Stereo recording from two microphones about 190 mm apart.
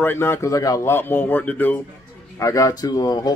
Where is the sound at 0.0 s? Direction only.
10° left (ahead or behind).